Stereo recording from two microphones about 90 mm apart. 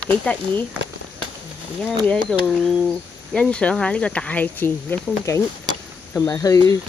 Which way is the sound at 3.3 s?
10° left (ahead or behind).